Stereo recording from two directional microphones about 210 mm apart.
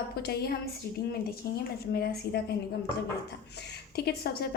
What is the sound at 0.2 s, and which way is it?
Speech, 50° left (ahead or behind).